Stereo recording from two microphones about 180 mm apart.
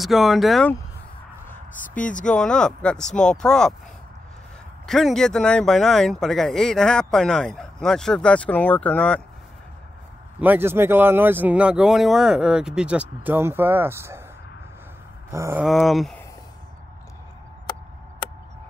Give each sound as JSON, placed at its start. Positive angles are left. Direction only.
{"t": 0.0, "sound": "speech", "side_deg": 0}
{"t": 2.1, "sound": "speech", "side_deg": 5}
{"t": 4.8, "sound": "speech", "side_deg": 0}
{"t": 10.4, "sound": "speech", "side_deg": -10}
{"t": 15.3, "sound": "speech", "side_deg": -15}
{"t": 15.6, "sound": "speech", "side_deg": 0}